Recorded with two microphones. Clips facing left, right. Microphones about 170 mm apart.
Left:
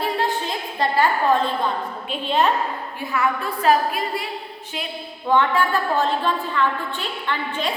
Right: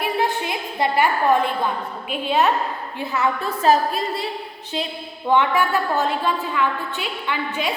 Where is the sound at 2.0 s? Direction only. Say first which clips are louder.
Right 1 dB; 5° right (ahead or behind).